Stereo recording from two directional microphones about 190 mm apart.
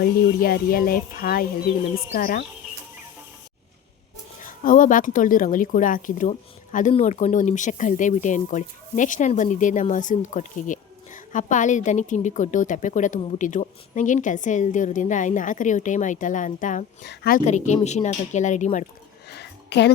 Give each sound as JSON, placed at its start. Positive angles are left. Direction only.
{"t": 0.0, "sound": "speech", "side_deg": 50}
{"t": 4.4, "sound": "speech", "side_deg": 45}
{"t": 19.3, "sound": "a sound", "side_deg": 60}